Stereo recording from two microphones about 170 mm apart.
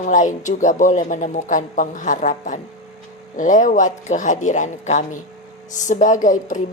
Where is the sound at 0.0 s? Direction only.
50° left (ahead or behind).